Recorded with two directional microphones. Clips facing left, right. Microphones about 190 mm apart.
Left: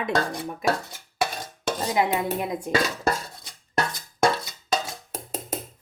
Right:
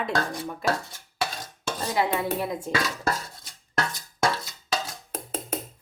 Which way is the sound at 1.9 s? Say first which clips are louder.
Even; 20° left (ahead or behind).